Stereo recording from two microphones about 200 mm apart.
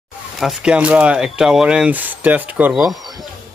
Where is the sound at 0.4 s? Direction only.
5° right (ahead or behind).